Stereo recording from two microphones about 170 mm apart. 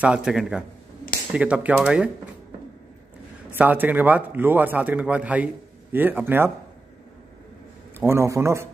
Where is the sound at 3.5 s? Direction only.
10° right (ahead or behind).